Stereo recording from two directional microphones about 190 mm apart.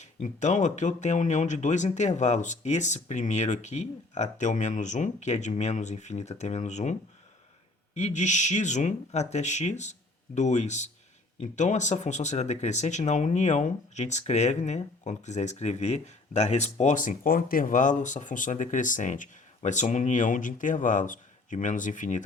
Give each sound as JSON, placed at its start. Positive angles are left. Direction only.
{"t": 0.0, "sound": "speech", "side_deg": 40}
{"t": 7.9, "sound": "speech", "side_deg": 35}